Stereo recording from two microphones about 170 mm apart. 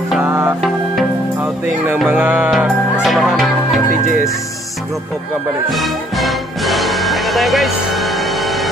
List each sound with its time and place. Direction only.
0.2 s music: 15° right (ahead or behind)
2.0 s music: 10° right (ahead or behind)
2.5 s speech: centre (ahead or behind)
5.7 s music: centre (ahead or behind)